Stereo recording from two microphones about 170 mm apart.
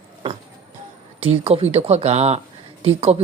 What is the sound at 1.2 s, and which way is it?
Speech, 35° right (ahead or behind).